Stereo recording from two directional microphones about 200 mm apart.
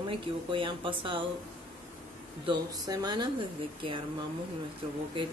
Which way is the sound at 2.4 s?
20° right (ahead or behind).